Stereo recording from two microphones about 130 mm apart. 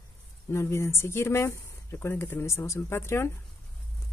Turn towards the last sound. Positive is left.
turn(degrees=20)  # may be behind; listen again after turning